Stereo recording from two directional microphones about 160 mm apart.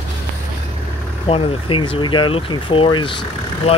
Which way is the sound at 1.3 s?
30° left (ahead or behind).